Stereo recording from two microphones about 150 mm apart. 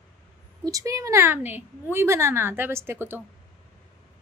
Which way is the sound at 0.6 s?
20° right (ahead or behind).